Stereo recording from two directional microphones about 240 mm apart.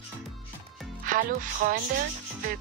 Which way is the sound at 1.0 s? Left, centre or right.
Right.